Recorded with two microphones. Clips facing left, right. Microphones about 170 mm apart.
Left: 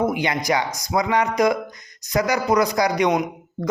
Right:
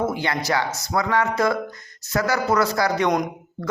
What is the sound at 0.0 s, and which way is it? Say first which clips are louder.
A man's voice: left 2 dB; 15° left (ahead or behind).